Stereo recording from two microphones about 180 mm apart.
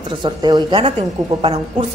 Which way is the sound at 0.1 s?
25° right (ahead or behind).